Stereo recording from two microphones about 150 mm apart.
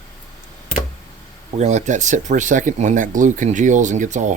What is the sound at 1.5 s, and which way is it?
Speech, 50° right (ahead or behind).